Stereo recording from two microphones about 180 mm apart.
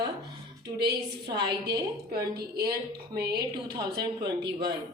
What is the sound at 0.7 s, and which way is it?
Speech, 65° right (ahead or behind).